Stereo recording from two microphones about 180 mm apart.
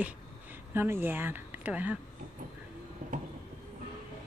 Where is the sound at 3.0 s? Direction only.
50° right (ahead or behind).